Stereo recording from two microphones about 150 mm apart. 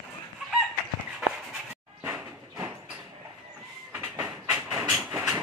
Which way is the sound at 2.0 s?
10° right (ahead or behind).